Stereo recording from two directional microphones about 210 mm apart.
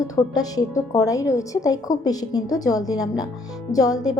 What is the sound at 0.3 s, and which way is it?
A woman's voice, 15° left (ahead or behind).